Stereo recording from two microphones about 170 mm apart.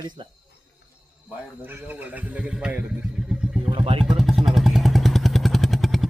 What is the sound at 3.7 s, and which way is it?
Speech, 30° right (ahead or behind).